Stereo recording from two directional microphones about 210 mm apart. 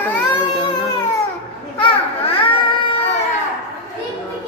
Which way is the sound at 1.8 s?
25° left (ahead or behind).